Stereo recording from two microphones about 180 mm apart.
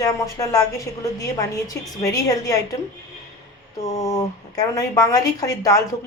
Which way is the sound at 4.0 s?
20° left (ahead or behind).